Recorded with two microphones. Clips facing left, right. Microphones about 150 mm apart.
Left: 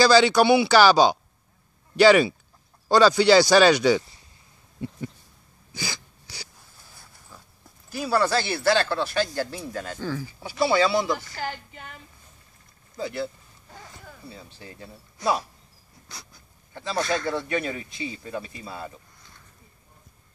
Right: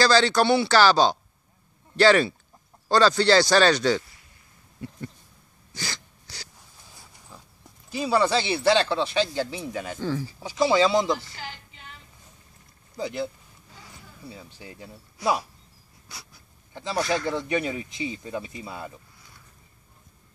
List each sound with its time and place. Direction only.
0.0 s speech: 10° left (ahead or behind)
4.8 s a sound: 20° left (ahead or behind)
5.8 s a sound: 10° left (ahead or behind)
7.0 s pig: centre (ahead or behind)
7.9 s speech: 5° left (ahead or behind)
9.7 s speech: 5° right (ahead or behind)
10.0 s speech: 25° right (ahead or behind)
11.3 s female singing: 50° left (ahead or behind)
12.9 s speech: 15° right (ahead or behind)
14.3 s speech: 10° right (ahead or behind)
16.7 s speech: 15° right (ahead or behind)